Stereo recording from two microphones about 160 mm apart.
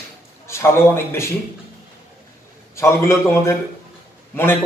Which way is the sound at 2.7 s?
15° left (ahead or behind).